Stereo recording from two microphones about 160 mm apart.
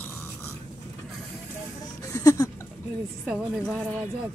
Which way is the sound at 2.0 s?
20° left (ahead or behind).